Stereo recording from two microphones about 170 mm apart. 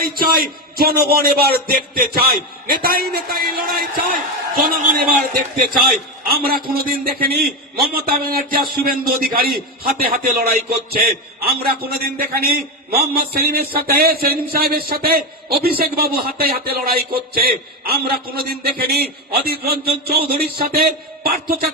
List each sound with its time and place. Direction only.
0.0 s a man's voice: 60° right (ahead or behind)